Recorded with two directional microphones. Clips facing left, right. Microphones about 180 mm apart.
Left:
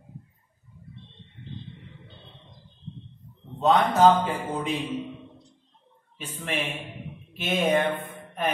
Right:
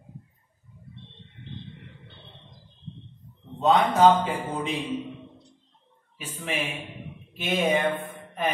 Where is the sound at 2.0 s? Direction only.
65° right (ahead or behind).